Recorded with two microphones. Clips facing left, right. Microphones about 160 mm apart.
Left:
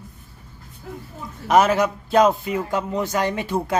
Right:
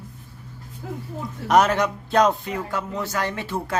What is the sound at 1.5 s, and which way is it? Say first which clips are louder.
Speech: left 2 dB; 5° left (ahead or behind).